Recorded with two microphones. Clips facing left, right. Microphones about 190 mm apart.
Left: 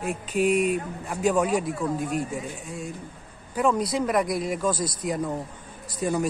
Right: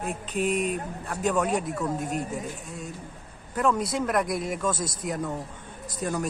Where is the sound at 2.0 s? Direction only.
40° right (ahead or behind).